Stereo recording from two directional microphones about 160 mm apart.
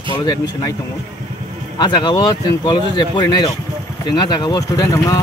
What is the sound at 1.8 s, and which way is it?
Speech, 30° left (ahead or behind).